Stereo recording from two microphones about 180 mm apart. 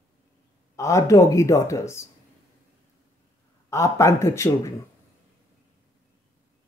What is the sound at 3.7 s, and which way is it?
A woman's voice, 15° left (ahead or behind).